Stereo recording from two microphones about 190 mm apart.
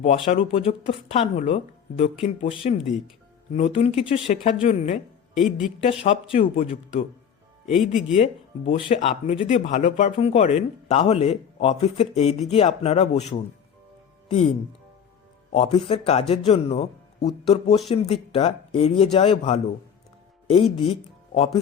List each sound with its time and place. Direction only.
0.3 s speech: 30° left (ahead or behind)
5.3 s speech: centre (ahead or behind)
5.8 s speech: 30° left (ahead or behind)
7.7 s speech: centre (ahead or behind)
8.1 s speech: 30° left (ahead or behind)
9.0 s speech: 40° left (ahead or behind)
9.3 s speech: 30° left (ahead or behind)
15.5 s a man's voice: 35° left (ahead or behind)